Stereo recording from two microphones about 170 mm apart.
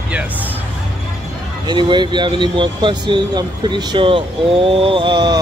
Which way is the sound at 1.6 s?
25° right (ahead or behind).